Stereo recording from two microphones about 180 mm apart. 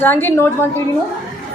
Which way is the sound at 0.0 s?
10° left (ahead or behind).